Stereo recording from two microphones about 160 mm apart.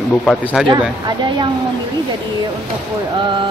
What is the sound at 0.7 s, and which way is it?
Speech, 25° right (ahead or behind).